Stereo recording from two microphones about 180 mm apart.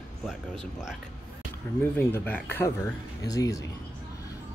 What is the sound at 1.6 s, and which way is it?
Speech, 15° left (ahead or behind).